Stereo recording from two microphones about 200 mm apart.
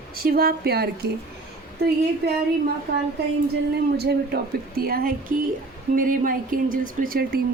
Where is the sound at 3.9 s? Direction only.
55° right (ahead or behind).